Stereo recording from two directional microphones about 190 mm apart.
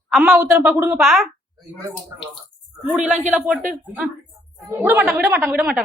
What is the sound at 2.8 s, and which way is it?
Speech, 5° right (ahead or behind).